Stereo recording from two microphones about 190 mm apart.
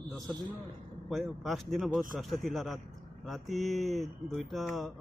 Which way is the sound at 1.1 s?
Centre (ahead or behind).